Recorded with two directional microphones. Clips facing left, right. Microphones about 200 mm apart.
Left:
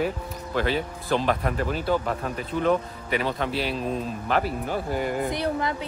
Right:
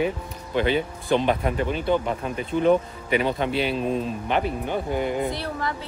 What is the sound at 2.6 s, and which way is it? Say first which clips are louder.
Speech: right 4 dB; centre (ahead or behind).